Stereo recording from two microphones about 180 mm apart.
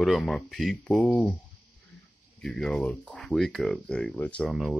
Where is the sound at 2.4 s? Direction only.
Centre (ahead or behind).